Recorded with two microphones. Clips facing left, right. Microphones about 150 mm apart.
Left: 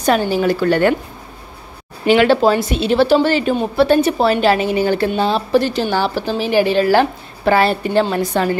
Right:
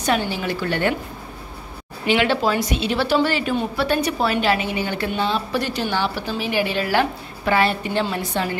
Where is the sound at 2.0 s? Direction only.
40° left (ahead or behind).